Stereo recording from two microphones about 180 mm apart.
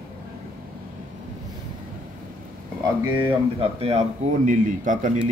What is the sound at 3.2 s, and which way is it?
Speech, 35° right (ahead or behind).